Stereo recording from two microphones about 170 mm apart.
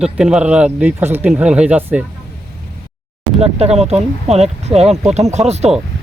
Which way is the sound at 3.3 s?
35° right (ahead or behind).